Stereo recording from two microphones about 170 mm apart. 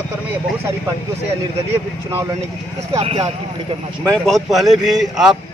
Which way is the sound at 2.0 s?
15° right (ahead or behind).